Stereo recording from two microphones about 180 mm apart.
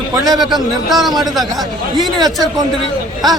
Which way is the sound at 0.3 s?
Centre (ahead or behind).